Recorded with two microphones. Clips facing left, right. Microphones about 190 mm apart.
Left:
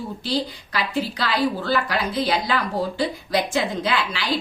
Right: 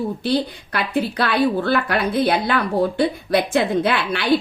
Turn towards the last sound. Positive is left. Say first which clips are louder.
# right 4 dB
turn(degrees=-60)  # may be behind; listen again after turning